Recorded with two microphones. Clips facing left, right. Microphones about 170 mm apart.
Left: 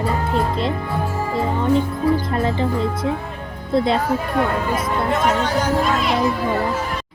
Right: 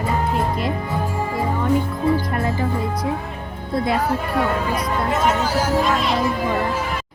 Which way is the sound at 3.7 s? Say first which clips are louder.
Left 3 dB; 25° left (ahead or behind).